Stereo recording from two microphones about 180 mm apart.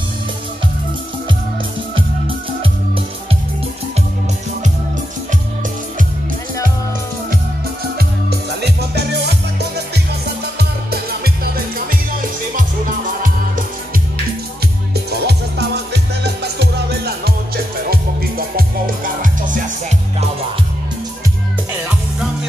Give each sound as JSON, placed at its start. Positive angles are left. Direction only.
{"t": 2.0, "sound": "music", "side_deg": -30}
{"t": 8.0, "sound": "music", "side_deg": -60}
{"t": 15.0, "sound": "music", "side_deg": -65}